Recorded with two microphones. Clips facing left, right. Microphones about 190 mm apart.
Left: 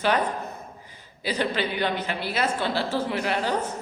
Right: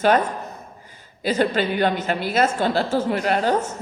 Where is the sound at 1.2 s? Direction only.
45° right (ahead or behind).